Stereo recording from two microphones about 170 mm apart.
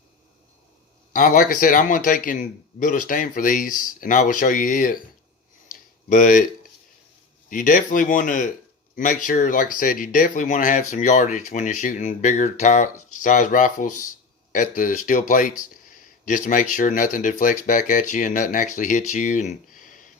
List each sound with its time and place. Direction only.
1.1 s speech: 55° left (ahead or behind)
6.1 s speech: 50° left (ahead or behind)